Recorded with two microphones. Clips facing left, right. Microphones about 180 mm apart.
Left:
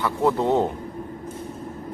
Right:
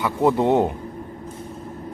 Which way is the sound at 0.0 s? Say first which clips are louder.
Right 3 dB; 15° right (ahead or behind).